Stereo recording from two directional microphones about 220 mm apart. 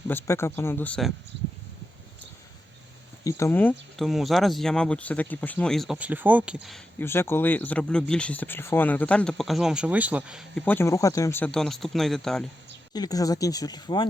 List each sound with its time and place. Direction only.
0.1 s speech: 10° left (ahead or behind)
3.2 s speech: 10° left (ahead or behind)
7.0 s speech: 10° left (ahead or behind)
12.9 s speech: 15° left (ahead or behind)